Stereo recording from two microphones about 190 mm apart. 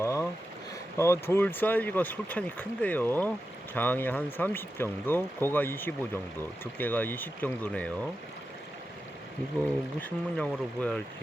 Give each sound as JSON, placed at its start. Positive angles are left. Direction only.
{"t": 0.0, "sound": "a sound", "side_deg": 15}
{"t": 0.9, "sound": "speech", "side_deg": 15}
{"t": 10.0, "sound": "speech", "side_deg": 5}